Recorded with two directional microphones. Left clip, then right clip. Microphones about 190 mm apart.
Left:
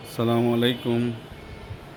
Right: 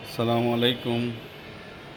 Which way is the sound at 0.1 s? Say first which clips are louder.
Left 1 dB; 20° left (ahead or behind).